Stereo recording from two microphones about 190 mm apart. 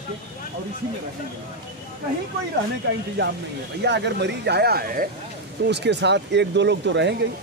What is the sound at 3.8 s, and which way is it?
Speech, 65° right (ahead or behind).